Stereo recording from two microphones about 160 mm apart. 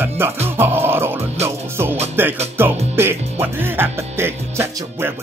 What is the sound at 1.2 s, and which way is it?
Speech, 40° right (ahead or behind).